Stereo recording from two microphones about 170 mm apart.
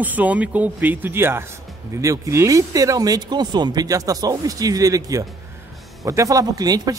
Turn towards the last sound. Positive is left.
turn(degrees=-20)  # may be behind; listen again after turning